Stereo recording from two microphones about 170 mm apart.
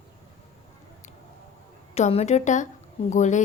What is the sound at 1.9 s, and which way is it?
A woman's voice, 40° left (ahead or behind).